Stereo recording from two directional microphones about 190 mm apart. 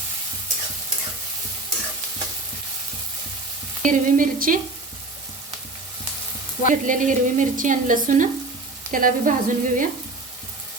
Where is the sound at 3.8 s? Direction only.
45° right (ahead or behind).